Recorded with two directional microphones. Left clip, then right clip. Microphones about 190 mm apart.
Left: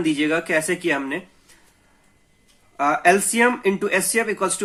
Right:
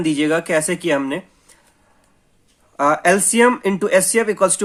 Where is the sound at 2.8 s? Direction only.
40° right (ahead or behind).